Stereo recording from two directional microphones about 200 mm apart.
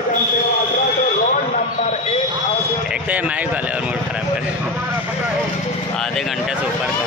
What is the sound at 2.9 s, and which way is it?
Speech, 5° right (ahead or behind).